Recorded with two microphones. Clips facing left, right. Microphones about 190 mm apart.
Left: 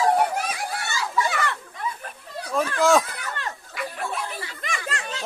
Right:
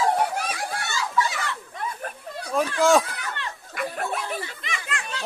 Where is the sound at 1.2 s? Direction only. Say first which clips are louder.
Left 4 dB; 60° left (ahead or behind).